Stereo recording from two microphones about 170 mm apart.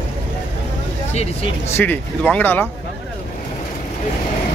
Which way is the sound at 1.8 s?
10° left (ahead or behind).